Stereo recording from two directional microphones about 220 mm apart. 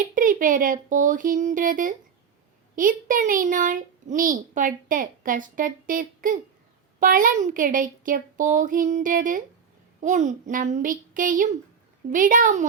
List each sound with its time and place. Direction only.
0.1 s a child's voice: 35° right (ahead or behind)